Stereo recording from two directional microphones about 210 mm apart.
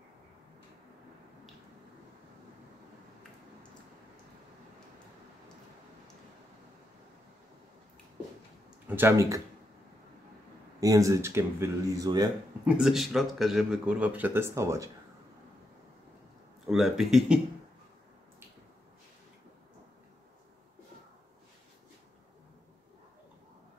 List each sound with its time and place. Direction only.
8.8 s speech: 10° right (ahead or behind)
10.8 s speech: 15° right (ahead or behind)
12.6 s speech: 5° right (ahead or behind)
16.6 s speech: centre (ahead or behind)